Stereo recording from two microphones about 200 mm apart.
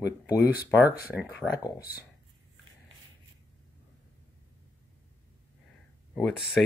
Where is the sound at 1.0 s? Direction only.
10° right (ahead or behind).